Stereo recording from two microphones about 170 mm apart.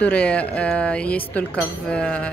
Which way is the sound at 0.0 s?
5° left (ahead or behind).